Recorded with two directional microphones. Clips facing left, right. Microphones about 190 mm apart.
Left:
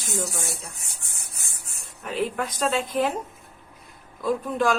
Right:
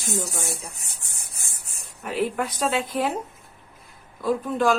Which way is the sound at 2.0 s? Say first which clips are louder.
Right 2 dB; 5° right (ahead or behind).